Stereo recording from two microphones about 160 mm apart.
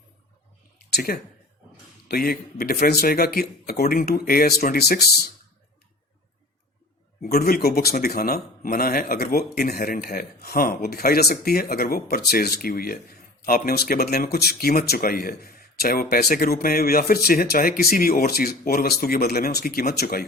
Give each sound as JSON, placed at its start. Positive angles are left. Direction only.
{"t": 0.8, "sound": "a sound", "side_deg": 80}
{"t": 2.0, "sound": "speech", "side_deg": 70}
{"t": 7.2, "sound": "speech", "side_deg": 70}